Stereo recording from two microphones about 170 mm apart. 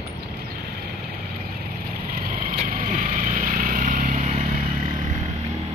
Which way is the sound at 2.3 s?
55° right (ahead or behind).